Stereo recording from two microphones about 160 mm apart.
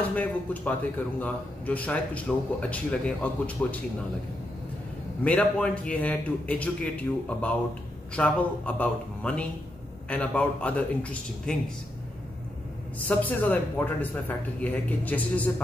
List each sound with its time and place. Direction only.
0.1 s speech: 10° left (ahead or behind)
5.2 s speech: 10° left (ahead or behind)
13.1 s speech: 10° left (ahead or behind)